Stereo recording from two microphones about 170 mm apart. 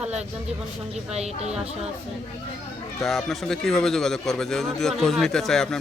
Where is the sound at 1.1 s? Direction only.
40° right (ahead or behind).